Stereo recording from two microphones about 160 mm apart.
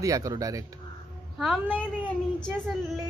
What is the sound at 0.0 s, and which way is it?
Speech, 20° right (ahead or behind).